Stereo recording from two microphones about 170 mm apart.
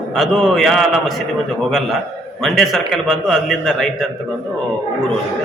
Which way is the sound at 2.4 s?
Centre (ahead or behind).